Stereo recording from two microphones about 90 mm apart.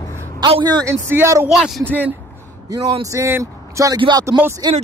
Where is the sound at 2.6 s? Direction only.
45° right (ahead or behind).